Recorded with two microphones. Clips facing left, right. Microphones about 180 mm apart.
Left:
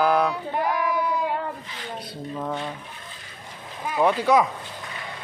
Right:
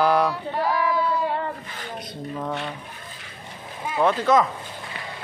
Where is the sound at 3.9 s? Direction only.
10° left (ahead or behind).